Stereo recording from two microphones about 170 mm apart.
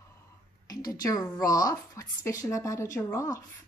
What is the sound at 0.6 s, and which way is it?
Speech, 20° left (ahead or behind).